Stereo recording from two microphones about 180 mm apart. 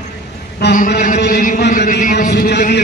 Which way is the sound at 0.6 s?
70° left (ahead or behind).